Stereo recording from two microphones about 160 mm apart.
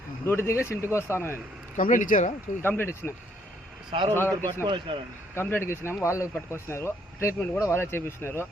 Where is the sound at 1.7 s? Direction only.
55° left (ahead or behind).